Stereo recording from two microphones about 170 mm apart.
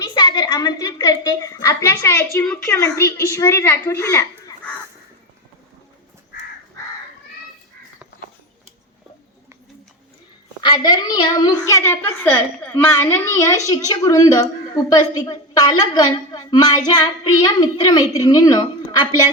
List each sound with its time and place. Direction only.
0.0 s a woman's voice: 25° left (ahead or behind)
10.6 s a child's voice: 25° left (ahead or behind)